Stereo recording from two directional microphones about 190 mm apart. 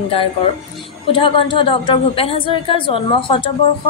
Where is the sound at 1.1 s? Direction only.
25° left (ahead or behind).